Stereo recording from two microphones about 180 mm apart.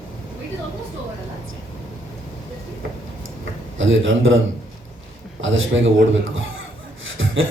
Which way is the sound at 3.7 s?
90° right.